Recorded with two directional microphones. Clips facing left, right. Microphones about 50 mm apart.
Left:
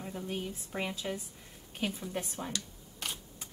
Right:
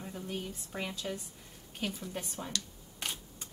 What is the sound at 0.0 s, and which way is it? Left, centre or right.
Speech, centre.